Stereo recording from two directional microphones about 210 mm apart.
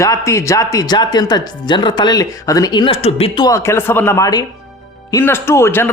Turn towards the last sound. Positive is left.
turn(degrees=10)  # may be behind; listen again after turning